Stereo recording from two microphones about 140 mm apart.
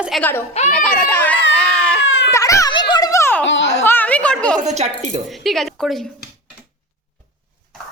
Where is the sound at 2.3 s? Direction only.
25° left (ahead or behind).